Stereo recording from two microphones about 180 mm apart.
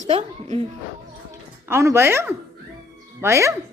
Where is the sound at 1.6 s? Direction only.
15° right (ahead or behind).